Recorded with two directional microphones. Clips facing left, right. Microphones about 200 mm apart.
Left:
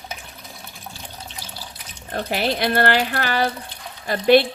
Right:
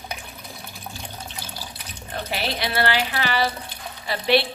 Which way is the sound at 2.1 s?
45° left (ahead or behind).